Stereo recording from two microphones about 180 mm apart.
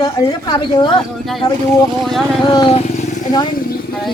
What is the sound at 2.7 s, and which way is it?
Speech, 40° left (ahead or behind).